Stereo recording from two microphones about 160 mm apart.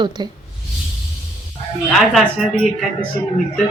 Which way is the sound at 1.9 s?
Centre (ahead or behind).